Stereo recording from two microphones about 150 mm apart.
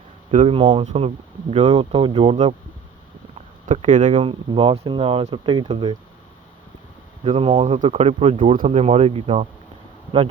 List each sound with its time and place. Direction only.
0.3 s speech: 45° right (ahead or behind)
0.6 s speech: 35° right (ahead or behind)
3.8 s speech: 55° right (ahead or behind)
4.2 s speech: 35° right (ahead or behind)
7.3 s speech: 35° right (ahead or behind)
7.6 s speech: 50° right (ahead or behind)